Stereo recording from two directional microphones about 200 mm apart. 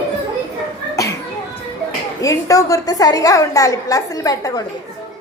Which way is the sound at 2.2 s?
15° left (ahead or behind).